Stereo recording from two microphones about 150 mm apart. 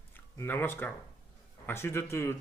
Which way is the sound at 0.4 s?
15° left (ahead or behind).